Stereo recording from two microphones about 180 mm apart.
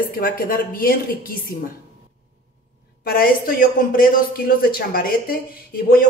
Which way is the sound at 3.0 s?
55° left (ahead or behind).